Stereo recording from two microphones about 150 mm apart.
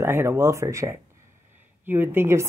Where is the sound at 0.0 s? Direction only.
15° right (ahead or behind).